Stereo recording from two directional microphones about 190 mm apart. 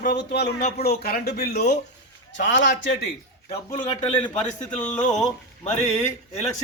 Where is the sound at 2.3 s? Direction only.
70° left (ahead or behind).